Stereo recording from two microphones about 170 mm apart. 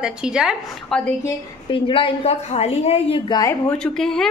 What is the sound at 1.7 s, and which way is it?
A woman's voice, 30° left (ahead or behind).